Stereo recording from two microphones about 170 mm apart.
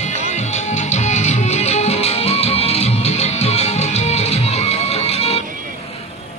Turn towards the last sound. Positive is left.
turn(degrees=40)  # may be behind; listen again after turning